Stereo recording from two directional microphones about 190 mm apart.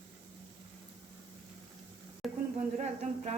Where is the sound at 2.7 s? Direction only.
35° right (ahead or behind).